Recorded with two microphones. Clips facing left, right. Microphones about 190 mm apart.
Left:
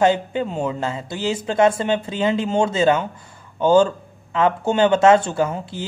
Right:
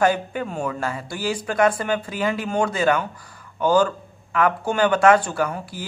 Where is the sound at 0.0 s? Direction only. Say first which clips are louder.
Left 3 dB; 20° left (ahead or behind).